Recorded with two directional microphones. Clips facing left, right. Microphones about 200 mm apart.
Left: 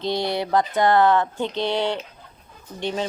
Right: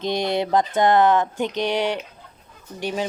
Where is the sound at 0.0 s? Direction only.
20° right (ahead or behind).